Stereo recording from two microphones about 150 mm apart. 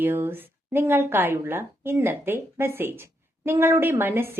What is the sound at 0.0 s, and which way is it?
A woman's voice, 15° right (ahead or behind).